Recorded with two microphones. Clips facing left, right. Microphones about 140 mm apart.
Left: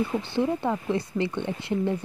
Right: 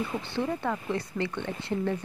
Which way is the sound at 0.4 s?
15° left (ahead or behind).